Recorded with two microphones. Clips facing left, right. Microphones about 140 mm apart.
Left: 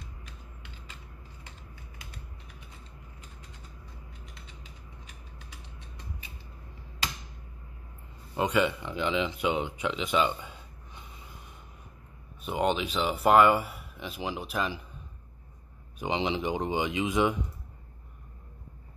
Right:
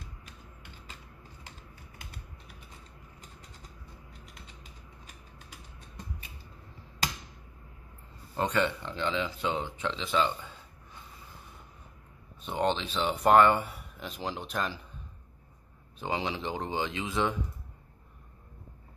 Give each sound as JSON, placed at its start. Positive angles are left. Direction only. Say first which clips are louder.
{"t": 8.4, "sound": "speech", "louder": "left 2 dB", "side_deg": 10}
{"t": 12.4, "sound": "speech", "louder": "left 2 dB", "side_deg": 10}
{"t": 16.0, "sound": "speech", "louder": "left 3 dB", "side_deg": 20}